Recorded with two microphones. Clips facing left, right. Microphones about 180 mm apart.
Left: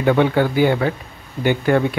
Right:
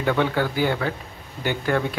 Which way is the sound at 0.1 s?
20° left (ahead or behind).